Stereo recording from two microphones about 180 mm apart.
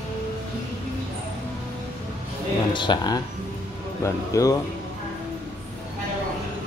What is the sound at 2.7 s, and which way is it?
Speech, 25° left (ahead or behind).